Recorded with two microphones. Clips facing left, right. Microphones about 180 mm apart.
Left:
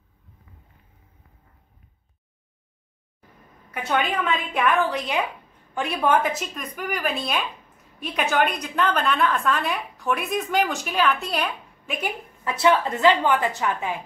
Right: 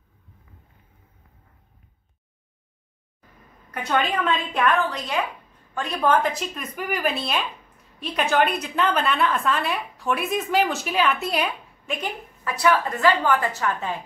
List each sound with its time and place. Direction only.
3.7 s a woman's voice: 5° left (ahead or behind)
12.4 s a woman's voice: 25° left (ahead or behind)